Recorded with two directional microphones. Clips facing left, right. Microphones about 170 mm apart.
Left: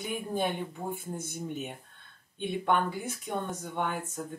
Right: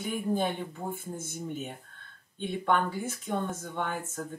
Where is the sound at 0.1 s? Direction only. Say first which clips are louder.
Right 2 dB; 15° left (ahead or behind).